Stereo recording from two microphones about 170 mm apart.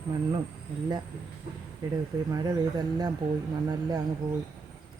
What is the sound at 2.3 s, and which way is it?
Speech, 20° right (ahead or behind).